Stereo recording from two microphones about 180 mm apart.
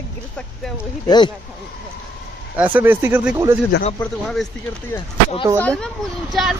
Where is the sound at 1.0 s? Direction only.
25° left (ahead or behind).